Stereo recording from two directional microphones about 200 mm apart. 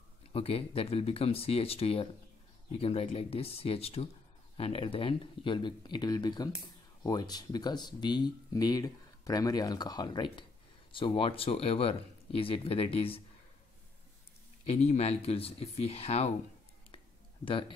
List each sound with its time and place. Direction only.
0.3 s speech: 30° left (ahead or behind)
14.7 s speech: 30° left (ahead or behind)
17.5 s speech: 25° left (ahead or behind)